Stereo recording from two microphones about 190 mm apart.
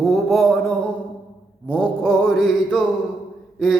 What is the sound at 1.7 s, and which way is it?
Mantra, 5° left (ahead or behind).